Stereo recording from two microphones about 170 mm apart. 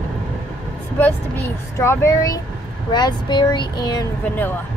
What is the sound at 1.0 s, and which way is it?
Speech, 15° left (ahead or behind).